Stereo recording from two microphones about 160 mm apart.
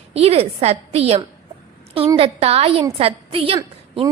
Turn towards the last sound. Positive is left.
turn(degrees=-35)  # may be behind; listen again after turning